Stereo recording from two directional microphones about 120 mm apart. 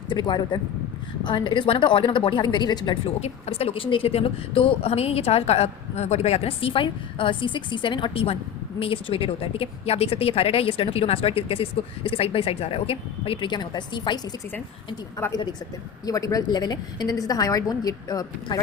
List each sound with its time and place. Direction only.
0.1 s a woman's voice: 40° left (ahead or behind)
3.2 s a woman's voice: 60° left (ahead or behind); by 14.2 s 40° left (ahead or behind)
16.0 s a woman's voice: 30° left (ahead or behind)